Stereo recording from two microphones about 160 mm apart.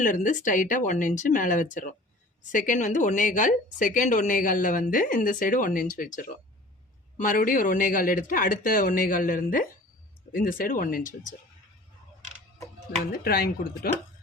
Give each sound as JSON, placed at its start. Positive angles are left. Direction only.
{"t": 0.0, "sound": "a woman's voice", "side_deg": 55}
{"t": 13.2, "sound": "speech", "side_deg": 70}